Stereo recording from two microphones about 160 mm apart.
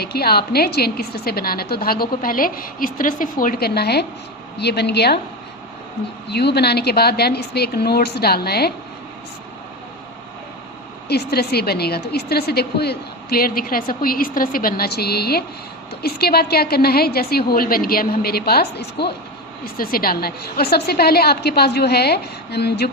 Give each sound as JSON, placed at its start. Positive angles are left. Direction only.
{"t": 0.0, "sound": "a woman's voice", "side_deg": 80}
{"t": 6.2, "sound": "a woman's voice", "side_deg": 90}
{"t": 11.1, "sound": "a woman's voice", "side_deg": 90}
{"t": 19.7, "sound": "a woman's voice", "side_deg": 65}